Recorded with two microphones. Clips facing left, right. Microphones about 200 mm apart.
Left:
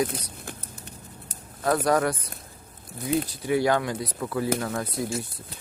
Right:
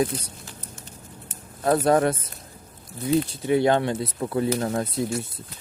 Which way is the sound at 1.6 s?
25° right (ahead or behind).